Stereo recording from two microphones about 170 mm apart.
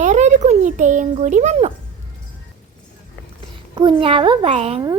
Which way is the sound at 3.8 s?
30° right (ahead or behind).